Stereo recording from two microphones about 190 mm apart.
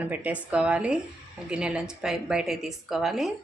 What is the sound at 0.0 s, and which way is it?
A woman's voice, 10° right (ahead or behind).